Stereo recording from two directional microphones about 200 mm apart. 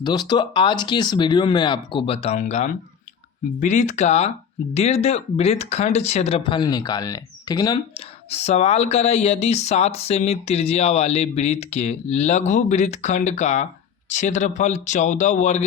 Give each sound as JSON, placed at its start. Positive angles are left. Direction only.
{"t": 0.0, "sound": "speech", "side_deg": 20}
{"t": 8.3, "sound": "speech", "side_deg": 30}